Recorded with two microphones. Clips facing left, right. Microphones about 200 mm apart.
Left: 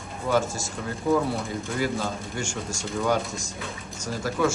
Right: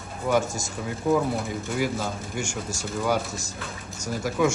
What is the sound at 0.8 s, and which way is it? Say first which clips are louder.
A man's voice: even; centre (ahead or behind).